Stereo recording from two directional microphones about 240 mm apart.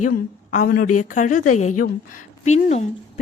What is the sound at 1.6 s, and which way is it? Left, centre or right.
Speech, left.